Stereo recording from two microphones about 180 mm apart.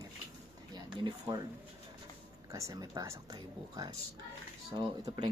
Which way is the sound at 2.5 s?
15° right (ahead or behind).